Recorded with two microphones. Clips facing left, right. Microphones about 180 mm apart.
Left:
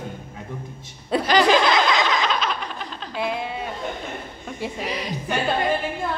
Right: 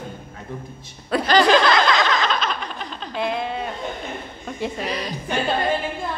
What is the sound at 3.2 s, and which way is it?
A woman's voice, 10° left (ahead or behind).